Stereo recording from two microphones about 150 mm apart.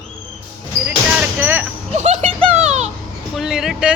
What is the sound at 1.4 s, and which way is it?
Vehicle, 15° right (ahead or behind).